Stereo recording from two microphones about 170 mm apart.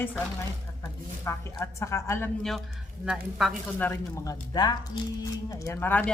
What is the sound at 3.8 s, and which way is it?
Speech, 15° left (ahead or behind).